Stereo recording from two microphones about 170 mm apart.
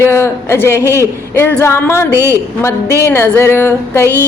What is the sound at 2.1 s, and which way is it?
Speech, 15° right (ahead or behind).